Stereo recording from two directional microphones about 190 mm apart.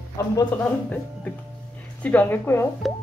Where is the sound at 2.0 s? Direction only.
10° left (ahead or behind).